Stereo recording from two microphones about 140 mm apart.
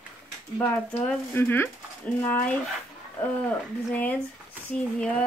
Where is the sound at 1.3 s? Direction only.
15° left (ahead or behind).